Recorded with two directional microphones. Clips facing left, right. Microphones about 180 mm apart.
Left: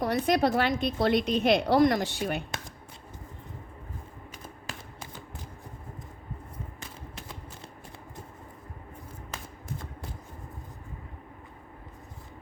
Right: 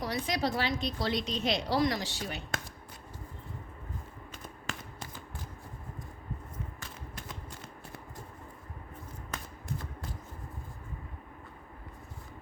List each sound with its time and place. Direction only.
0.0 s a woman's voice: 55° left (ahead or behind)